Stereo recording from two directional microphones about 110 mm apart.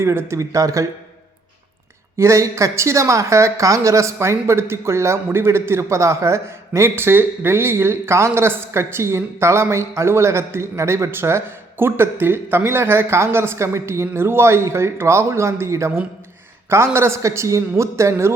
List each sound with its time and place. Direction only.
0.0 s a woman's voice: 25° right (ahead or behind)
2.1 s a woman's voice: 25° right (ahead or behind)